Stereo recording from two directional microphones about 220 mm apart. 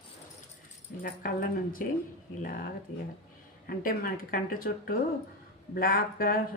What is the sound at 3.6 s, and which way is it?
Speech, 40° left (ahead or behind).